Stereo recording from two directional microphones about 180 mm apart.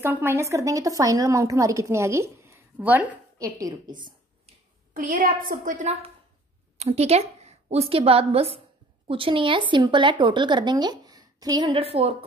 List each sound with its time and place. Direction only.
0.0 s a woman's voice: 10° right (ahead or behind)
4.9 s a woman's voice: 50° right (ahead or behind)
6.8 s a woman's voice: 35° right (ahead or behind)